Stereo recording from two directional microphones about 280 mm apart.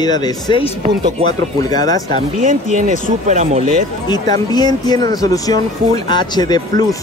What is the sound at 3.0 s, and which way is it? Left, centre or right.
Speech, right.